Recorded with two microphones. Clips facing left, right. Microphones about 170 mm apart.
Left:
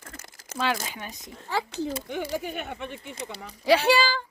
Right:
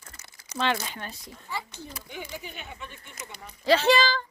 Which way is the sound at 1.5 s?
90° left.